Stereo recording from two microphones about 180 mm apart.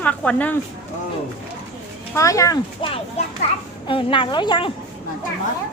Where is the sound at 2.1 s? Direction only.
15° left (ahead or behind).